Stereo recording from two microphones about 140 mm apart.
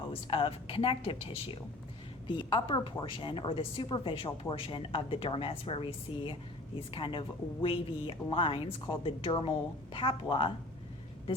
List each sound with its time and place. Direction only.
0.1 s a woman's voice: 40° left (ahead or behind)